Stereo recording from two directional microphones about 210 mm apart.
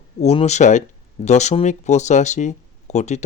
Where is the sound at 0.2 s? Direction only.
30° left (ahead or behind).